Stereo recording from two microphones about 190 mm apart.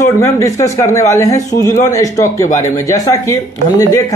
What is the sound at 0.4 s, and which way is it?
A man's voice, 15° left (ahead or behind).